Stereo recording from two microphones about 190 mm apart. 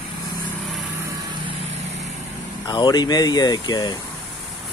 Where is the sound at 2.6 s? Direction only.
20° left (ahead or behind).